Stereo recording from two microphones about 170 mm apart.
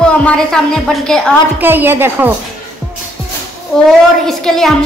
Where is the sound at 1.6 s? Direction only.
10° right (ahead or behind).